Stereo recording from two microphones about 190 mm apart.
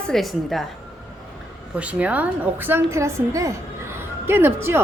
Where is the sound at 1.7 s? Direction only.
5° right (ahead or behind).